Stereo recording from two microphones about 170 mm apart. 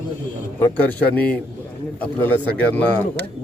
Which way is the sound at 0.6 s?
10° left (ahead or behind).